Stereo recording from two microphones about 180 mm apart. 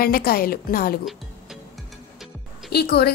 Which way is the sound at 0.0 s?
55° left (ahead or behind).